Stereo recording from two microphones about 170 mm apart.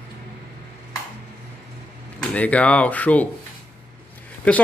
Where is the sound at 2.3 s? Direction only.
5° left (ahead or behind).